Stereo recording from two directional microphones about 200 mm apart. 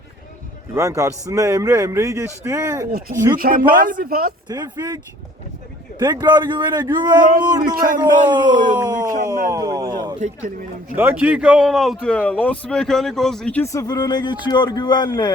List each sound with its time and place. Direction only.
0.7 s speech: 15° right (ahead or behind)
3.3 s speech: 45° right (ahead or behind)
4.4 s speech: 20° right (ahead or behind)
6.0 s speech: 20° right (ahead or behind)
10.2 s speech: 35° right (ahead or behind)
10.9 s a man's voice: 10° right (ahead or behind); by 15.3 s 20° left (ahead or behind)